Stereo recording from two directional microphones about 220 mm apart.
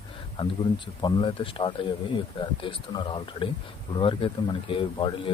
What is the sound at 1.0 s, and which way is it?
Speech, 20° left (ahead or behind).